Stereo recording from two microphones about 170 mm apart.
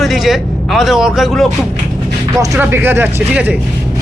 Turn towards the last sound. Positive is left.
turn(degrees=-10)  # may be behind; listen again after turning